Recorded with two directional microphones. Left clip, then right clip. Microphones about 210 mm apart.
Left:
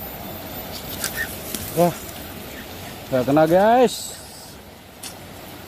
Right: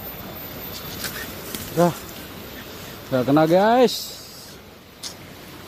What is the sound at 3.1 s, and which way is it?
Speech, 15° right (ahead or behind).